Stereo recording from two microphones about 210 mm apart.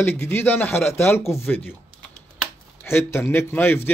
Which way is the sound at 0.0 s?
10° left (ahead or behind).